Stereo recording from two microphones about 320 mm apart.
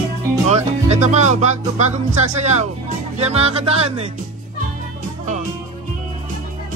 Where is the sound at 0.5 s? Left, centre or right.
Right.